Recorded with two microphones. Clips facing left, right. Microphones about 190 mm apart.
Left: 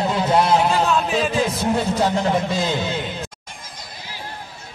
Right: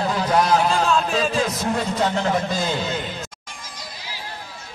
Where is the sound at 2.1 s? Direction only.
15° left (ahead or behind).